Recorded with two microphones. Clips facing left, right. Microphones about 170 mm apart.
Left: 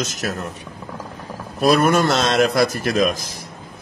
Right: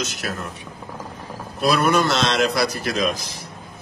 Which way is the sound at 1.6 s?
45° left (ahead or behind).